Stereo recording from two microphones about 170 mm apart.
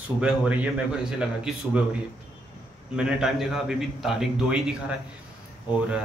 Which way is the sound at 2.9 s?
5° right (ahead or behind).